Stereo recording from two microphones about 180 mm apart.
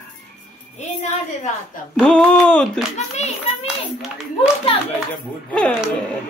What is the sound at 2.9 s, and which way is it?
Speech, 40° left (ahead or behind).